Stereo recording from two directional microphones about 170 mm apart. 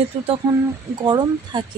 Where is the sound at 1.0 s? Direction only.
25° right (ahead or behind).